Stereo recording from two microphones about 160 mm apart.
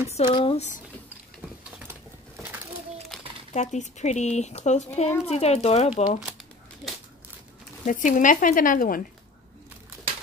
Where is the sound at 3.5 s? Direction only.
45° left (ahead or behind).